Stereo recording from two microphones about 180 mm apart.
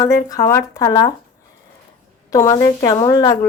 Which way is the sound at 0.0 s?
20° left (ahead or behind).